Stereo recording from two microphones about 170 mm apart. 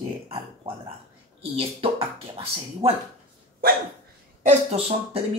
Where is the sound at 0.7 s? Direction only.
35° right (ahead or behind).